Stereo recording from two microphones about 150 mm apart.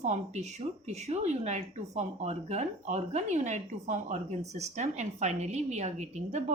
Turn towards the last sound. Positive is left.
turn(degrees=-50)  # may be behind; listen again after turning